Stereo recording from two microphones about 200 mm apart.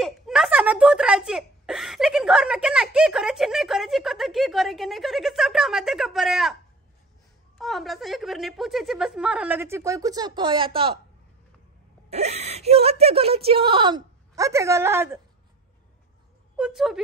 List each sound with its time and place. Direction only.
0.0 s speech: centre (ahead or behind); by 11.0 s 25° right (ahead or behind)
12.1 s speech: 30° right (ahead or behind); by 15.1 s 10° right (ahead or behind)
16.5 s speech: centre (ahead or behind)